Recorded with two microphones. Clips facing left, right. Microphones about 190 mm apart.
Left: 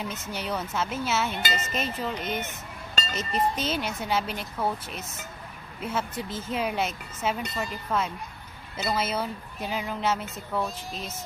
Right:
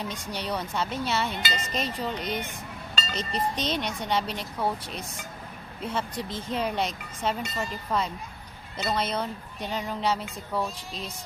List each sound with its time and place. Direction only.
0.0 s speech: 5° left (ahead or behind)
2.9 s chink: 45° left (ahead or behind)
3.2 s speech: 5° left (ahead or behind)